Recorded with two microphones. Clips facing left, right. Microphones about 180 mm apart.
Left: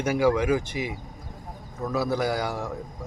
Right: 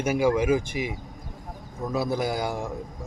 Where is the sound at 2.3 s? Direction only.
25° right (ahead or behind).